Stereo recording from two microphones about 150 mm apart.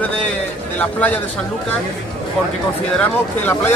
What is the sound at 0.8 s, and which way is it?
Speech, 10° left (ahead or behind).